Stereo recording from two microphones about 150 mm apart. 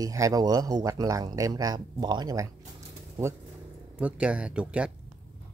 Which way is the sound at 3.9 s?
10° right (ahead or behind).